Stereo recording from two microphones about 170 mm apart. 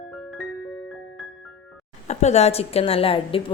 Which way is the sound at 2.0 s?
40° left (ahead or behind).